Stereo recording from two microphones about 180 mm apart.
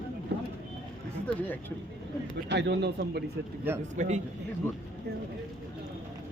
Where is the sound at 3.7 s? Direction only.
10° right (ahead or behind).